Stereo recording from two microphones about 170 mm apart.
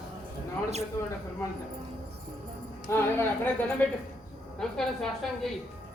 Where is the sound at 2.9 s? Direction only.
10° left (ahead or behind).